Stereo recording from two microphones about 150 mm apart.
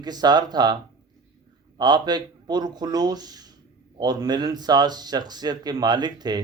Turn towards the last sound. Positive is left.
turn(degrees=-30)  # may be behind; listen again after turning